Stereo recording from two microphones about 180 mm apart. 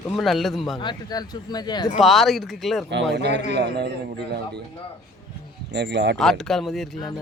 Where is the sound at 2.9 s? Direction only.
75° right (ahead or behind).